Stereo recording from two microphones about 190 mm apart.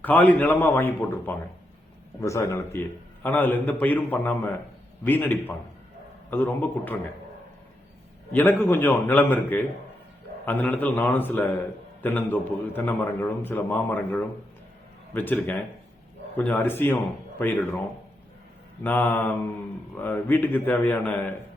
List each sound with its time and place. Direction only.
0.0 s a man's voice: 10° left (ahead or behind)
8.3 s a man's voice: 10° left (ahead or behind)
18.8 s a man's voice: 10° left (ahead or behind)